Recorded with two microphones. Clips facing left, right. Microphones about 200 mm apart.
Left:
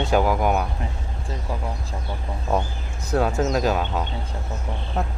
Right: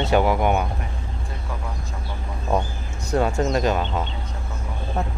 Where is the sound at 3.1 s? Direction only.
Centre (ahead or behind).